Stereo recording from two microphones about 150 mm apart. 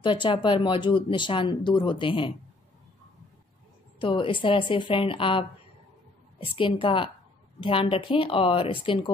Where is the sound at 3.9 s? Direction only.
35° left (ahead or behind).